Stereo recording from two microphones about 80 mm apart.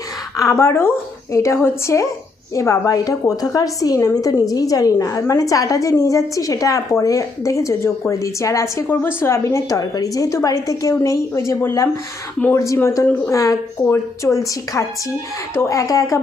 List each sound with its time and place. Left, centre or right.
0.3 s a woman's voice: left
8.9 s a woman's voice: left
13.2 s a woman's voice: left
13.7 s a woman's voice: left